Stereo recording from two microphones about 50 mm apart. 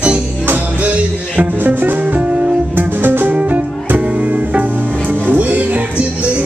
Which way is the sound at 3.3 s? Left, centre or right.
Right.